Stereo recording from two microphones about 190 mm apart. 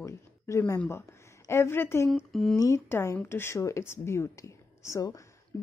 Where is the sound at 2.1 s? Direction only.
Centre (ahead or behind).